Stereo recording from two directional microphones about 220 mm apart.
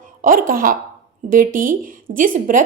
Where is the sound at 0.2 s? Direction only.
40° right (ahead or behind).